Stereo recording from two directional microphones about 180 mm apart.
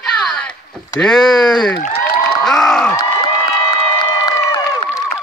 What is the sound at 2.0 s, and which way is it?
Crowd, 5° left (ahead or behind).